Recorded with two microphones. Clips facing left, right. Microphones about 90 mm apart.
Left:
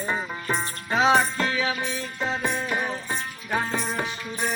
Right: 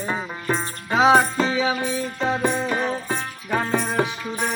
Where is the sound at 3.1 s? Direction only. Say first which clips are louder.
Right 3 dB; 60° right (ahead or behind).